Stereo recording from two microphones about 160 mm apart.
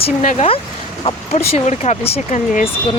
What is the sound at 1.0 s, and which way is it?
Speech, 40° left (ahead or behind).